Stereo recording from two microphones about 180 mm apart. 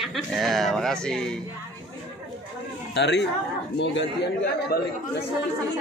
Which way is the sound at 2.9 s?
70° left (ahead or behind).